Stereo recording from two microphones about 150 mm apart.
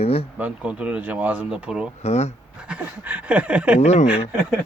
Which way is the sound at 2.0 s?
45° left (ahead or behind).